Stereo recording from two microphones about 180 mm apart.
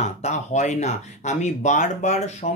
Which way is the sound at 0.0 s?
40° left (ahead or behind).